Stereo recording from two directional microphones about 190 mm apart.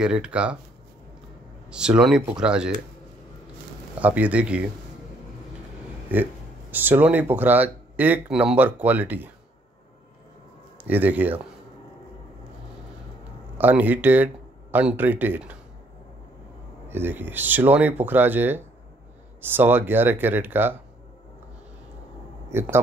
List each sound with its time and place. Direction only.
0.0 s speech: 5° right (ahead or behind)
1.7 s speech: 5° right (ahead or behind)
4.0 s speech: 10° right (ahead or behind)
6.1 s speech: 10° right (ahead or behind)
10.8 s speech: 10° right (ahead or behind)
13.6 s speech: 10° right (ahead or behind)
16.9 s speech: 10° right (ahead or behind)
22.5 s speech: 10° right (ahead or behind)